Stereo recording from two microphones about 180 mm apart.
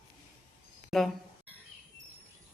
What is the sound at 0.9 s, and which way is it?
Speech, centre (ahead or behind).